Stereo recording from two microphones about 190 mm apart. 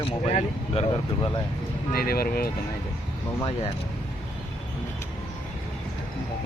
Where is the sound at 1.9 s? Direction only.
55° left (ahead or behind).